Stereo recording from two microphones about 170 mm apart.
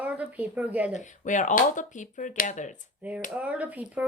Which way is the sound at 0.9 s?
45° left (ahead or behind).